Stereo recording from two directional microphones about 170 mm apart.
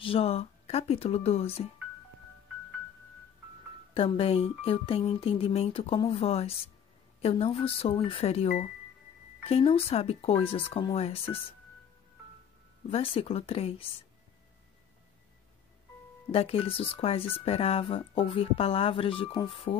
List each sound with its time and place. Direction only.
0.0 s speech: 35° left (ahead or behind)
3.9 s speech: 35° left (ahead or behind)
12.9 s speech: 35° left (ahead or behind)
16.3 s speech: 35° left (ahead or behind)